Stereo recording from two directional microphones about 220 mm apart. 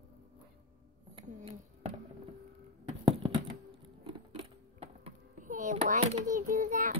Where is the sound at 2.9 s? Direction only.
30° right (ahead or behind).